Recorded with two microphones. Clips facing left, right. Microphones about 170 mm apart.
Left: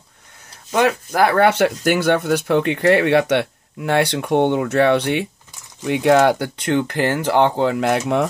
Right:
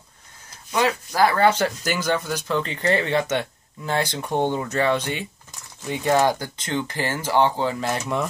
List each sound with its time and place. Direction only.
0.7 s speech: 55° left (ahead or behind)